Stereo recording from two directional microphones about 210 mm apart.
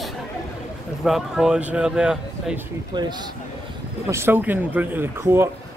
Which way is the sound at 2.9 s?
20° right (ahead or behind).